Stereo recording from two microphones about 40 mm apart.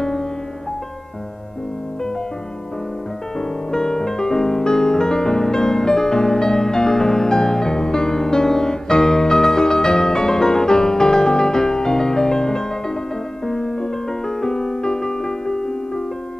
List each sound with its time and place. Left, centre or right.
0.0 s music: centre
3.3 s piano: centre